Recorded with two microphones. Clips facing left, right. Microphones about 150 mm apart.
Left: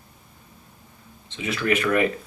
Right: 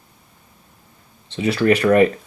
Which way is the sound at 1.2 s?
35° right (ahead or behind).